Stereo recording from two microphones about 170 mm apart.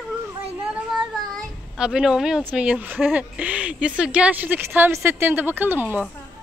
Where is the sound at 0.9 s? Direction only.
5° right (ahead or behind).